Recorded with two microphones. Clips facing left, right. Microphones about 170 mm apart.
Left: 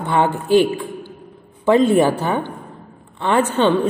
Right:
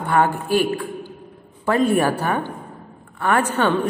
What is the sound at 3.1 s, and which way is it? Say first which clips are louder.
Speech: left 2 dB; 25° left (ahead or behind).